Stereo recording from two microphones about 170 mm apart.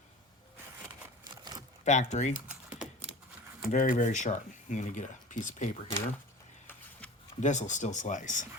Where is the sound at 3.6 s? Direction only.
50° left (ahead or behind).